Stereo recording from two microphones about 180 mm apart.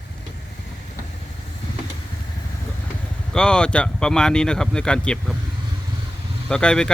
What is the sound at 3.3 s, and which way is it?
A man's voice, 5° left (ahead or behind).